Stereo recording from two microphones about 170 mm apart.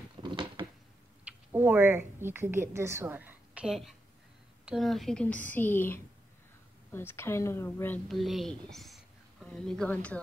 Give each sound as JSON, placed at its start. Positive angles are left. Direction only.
{"t": 0.2, "sound": "a sound", "side_deg": -30}
{"t": 1.2, "sound": "a woman's voice", "side_deg": -10}
{"t": 8.1, "sound": "speech", "side_deg": 0}